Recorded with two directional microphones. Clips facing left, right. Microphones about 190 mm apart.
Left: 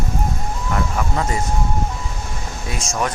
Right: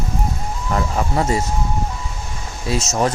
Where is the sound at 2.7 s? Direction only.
30° right (ahead or behind).